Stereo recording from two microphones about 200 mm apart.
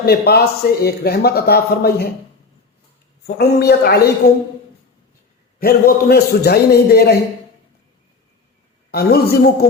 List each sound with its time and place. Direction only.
0.0 s a man's voice: 50° left (ahead or behind)
3.2 s a man's voice: 55° left (ahead or behind)
5.5 s a man's voice: 50° left (ahead or behind)
8.9 s a man's voice: 50° left (ahead or behind)